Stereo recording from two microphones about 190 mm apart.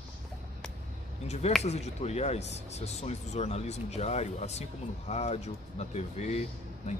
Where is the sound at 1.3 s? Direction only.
35° left (ahead or behind).